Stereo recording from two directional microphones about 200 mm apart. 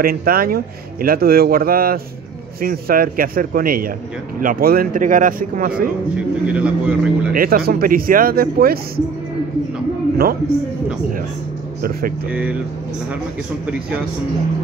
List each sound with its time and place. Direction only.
0.0 s speech: 50° right (ahead or behind)
6.4 s a man's voice: 5° right (ahead or behind)
7.3 s speech: 50° right (ahead or behind)
12.3 s a man's voice: 5° right (ahead or behind)
13.7 s speech: 5° right (ahead or behind)